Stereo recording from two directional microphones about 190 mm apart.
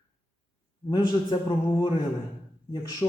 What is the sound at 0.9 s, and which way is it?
Speech, 20° left (ahead or behind).